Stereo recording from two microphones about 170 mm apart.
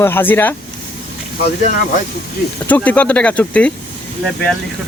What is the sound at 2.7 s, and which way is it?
Speech, 10° left (ahead or behind).